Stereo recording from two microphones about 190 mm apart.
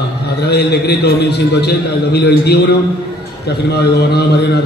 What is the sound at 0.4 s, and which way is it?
A man's voice, 60° left (ahead or behind).